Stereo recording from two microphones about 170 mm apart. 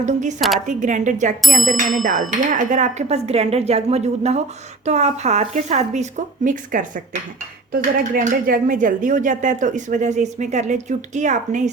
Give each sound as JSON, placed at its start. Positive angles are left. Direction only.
{"t": 0.0, "sound": "speech", "side_deg": -45}
{"t": 1.4, "sound": "ding", "side_deg": 0}
{"t": 1.7, "sound": "speech", "side_deg": -50}